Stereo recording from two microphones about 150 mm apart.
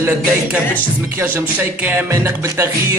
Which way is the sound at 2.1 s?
20° right (ahead or behind).